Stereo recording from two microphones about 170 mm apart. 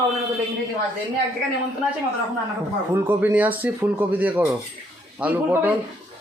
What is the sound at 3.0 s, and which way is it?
Speech, 10° right (ahead or behind).